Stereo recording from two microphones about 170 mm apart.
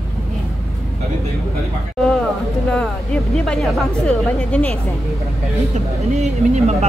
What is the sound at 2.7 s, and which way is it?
Speech, 5° left (ahead or behind).